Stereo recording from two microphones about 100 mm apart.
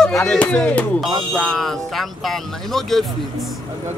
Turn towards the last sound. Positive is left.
turn(degrees=5)  # may be behind; listen again after turning